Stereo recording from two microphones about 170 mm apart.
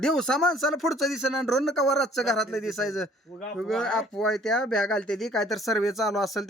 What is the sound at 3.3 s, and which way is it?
Speech, 20° left (ahead or behind).